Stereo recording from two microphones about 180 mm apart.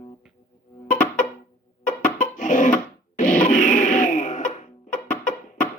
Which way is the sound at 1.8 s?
45° left (ahead or behind).